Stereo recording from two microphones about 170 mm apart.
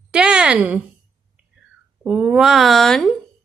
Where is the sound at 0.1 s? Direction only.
5° right (ahead or behind).